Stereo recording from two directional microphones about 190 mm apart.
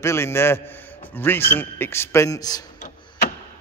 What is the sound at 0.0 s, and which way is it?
A man's voice, 15° left (ahead or behind).